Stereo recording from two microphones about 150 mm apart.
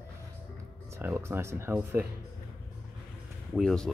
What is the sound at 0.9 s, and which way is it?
Speech, 15° right (ahead or behind).